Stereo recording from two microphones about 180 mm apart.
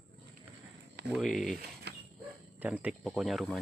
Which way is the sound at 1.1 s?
Centre (ahead or behind).